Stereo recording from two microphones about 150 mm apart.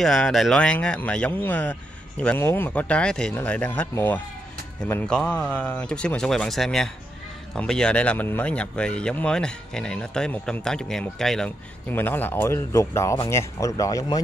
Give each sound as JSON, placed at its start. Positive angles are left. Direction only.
{"t": 0.0, "sound": "speech", "side_deg": 0}